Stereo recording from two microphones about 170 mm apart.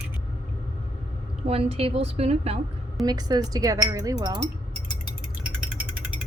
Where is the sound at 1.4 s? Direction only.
35° right (ahead or behind).